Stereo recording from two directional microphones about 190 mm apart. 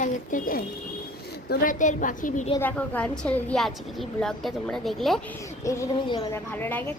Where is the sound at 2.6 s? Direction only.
5° left (ahead or behind).